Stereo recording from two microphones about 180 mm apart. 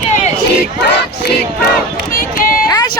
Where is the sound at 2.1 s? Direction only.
50° left (ahead or behind).